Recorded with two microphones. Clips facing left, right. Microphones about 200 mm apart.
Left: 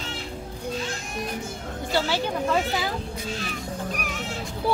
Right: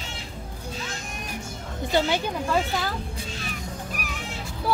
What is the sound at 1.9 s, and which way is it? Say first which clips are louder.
Speech: right 2 dB; 20° right (ahead or behind).